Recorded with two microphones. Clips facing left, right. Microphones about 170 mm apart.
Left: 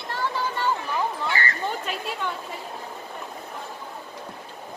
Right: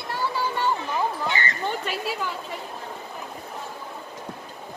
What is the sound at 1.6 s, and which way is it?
Speech, centre (ahead or behind).